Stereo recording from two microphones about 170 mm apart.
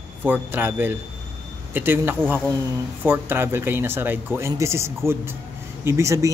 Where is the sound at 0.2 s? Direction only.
10° right (ahead or behind).